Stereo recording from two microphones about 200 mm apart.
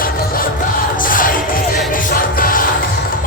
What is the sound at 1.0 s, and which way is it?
Music, 45° left (ahead or behind).